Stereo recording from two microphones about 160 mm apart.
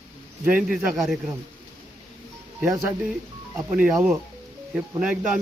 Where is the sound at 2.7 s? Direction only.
20° right (ahead or behind).